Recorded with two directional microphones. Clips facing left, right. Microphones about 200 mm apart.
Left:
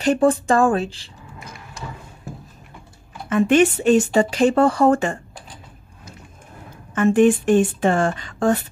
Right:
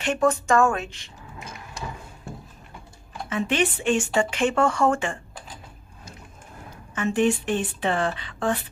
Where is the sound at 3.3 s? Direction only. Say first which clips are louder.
Left 9 dB; 50° left (ahead or behind).